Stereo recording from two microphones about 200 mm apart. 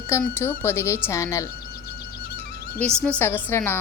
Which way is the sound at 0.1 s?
10° left (ahead or behind).